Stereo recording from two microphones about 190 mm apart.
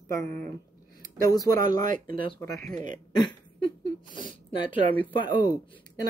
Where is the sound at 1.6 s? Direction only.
45° right (ahead or behind).